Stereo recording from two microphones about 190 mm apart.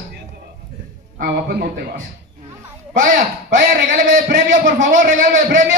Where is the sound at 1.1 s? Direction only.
50° right (ahead or behind).